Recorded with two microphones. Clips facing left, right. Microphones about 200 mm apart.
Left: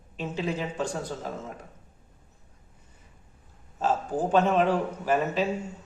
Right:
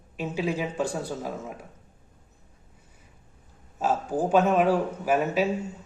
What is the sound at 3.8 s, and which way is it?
A man's voice, 10° right (ahead or behind).